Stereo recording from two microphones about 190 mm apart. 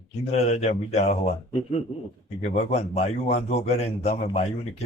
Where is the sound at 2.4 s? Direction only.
35° left (ahead or behind).